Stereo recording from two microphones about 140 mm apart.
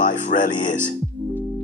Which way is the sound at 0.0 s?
65° left (ahead or behind).